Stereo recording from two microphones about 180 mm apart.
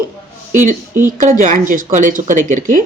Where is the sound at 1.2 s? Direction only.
50° right (ahead or behind).